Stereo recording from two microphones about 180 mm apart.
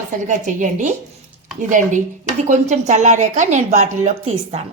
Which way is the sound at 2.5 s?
40° right (ahead or behind).